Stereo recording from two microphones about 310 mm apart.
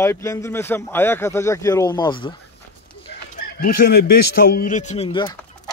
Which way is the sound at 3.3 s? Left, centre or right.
Left.